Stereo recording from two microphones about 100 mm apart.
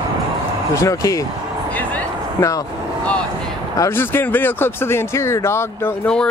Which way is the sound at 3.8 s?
20° left (ahead or behind).